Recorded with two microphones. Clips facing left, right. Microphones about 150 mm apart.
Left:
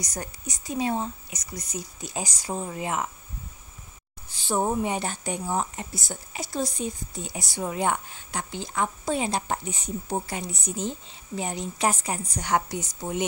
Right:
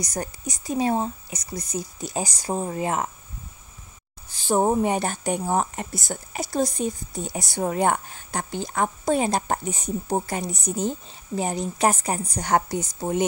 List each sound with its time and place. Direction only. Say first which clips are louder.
0.0 s speech: right 5 dB; 35° right (ahead or behind)
4.3 s a woman's voice: right 5 dB; 40° right (ahead or behind)